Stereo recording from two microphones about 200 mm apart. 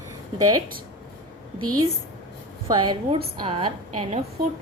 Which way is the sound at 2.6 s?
20° right (ahead or behind).